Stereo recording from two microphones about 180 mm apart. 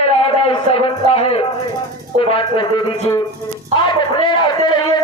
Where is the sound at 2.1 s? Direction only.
30° left (ahead or behind).